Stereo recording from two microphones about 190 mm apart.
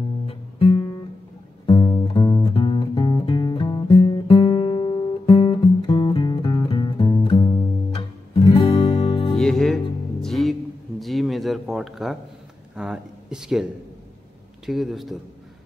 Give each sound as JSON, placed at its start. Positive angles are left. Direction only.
{"t": 0.3, "sound": "music", "side_deg": 30}
{"t": 4.3, "sound": "guitar", "side_deg": 25}
{"t": 8.4, "sound": "music", "side_deg": 25}
{"t": 9.4, "sound": "music", "side_deg": 0}
{"t": 11.0, "sound": "a sound", "side_deg": 0}
{"t": 14.7, "sound": "a man's voice", "side_deg": 0}